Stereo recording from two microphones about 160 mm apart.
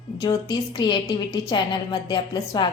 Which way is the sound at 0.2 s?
25° left (ahead or behind).